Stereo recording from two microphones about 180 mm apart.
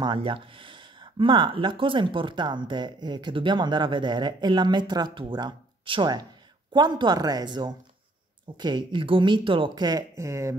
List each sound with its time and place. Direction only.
0.0 s speech: 30° right (ahead or behind)